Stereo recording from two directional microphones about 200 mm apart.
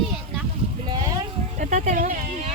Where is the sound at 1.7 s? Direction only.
40° right (ahead or behind).